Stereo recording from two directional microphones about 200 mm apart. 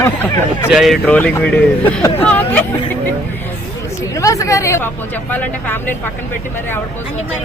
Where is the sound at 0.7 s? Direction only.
Centre (ahead or behind).